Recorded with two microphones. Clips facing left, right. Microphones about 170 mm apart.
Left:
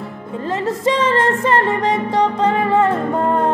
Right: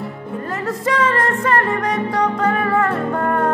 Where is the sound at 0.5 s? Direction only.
25° left (ahead or behind).